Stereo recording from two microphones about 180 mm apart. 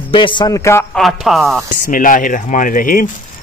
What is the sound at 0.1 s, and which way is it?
Speech, 25° left (ahead or behind).